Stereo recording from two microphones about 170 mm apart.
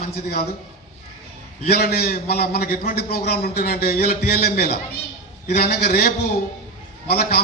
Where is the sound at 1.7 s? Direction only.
65° left (ahead or behind).